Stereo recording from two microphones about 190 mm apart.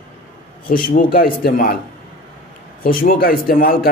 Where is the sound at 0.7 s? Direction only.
45° left (ahead or behind).